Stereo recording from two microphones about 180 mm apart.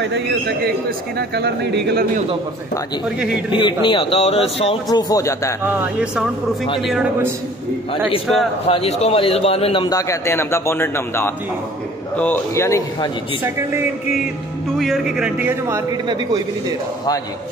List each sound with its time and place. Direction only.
0.0 s a man's voice: 70° right (ahead or behind)
3.5 s a man's voice: 25° left (ahead or behind)
4.8 s speech: 20° left (ahead or behind)
5.7 s a man's voice: 10° right (ahead or behind)
8.6 s a man's voice: 35° left (ahead or behind)
9.8 s a man's voice: 20° left (ahead or behind)
14.8 s a man's voice: centre (ahead or behind)